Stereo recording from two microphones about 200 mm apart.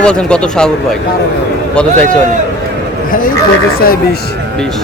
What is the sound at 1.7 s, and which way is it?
Speech, 5° left (ahead or behind).